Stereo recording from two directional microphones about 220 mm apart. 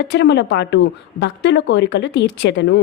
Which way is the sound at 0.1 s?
50° left (ahead or behind).